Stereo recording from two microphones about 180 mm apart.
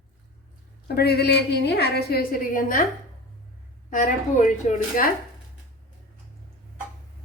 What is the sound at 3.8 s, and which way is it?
Speech, 45° left (ahead or behind).